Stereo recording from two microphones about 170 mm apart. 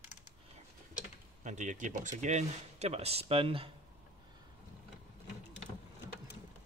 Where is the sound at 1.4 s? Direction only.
45° right (ahead or behind).